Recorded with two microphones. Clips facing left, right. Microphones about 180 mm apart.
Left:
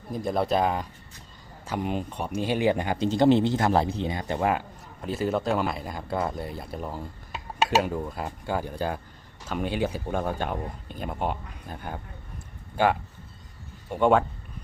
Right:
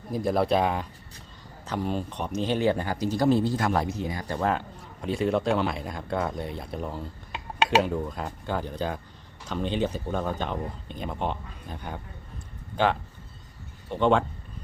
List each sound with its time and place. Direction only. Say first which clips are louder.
0.1 s speech: right 2 dB; centre (ahead or behind)
1.6 s speech: even; 10° left (ahead or behind)